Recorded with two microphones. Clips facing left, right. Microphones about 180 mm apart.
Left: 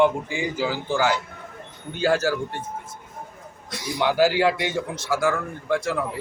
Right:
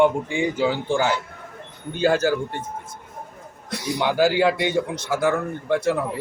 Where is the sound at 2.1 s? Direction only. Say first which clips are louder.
Right 1 dB; 15° right (ahead or behind).